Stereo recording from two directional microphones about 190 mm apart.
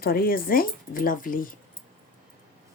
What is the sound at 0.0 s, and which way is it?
Speech, 50° left (ahead or behind).